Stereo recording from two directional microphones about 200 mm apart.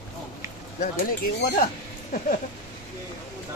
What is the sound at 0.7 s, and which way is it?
Speech, 45° left (ahead or behind).